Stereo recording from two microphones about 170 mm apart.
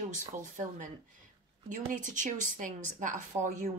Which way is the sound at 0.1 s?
50° right (ahead or behind).